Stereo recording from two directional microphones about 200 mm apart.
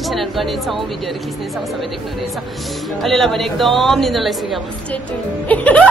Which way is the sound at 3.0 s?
Centre (ahead or behind).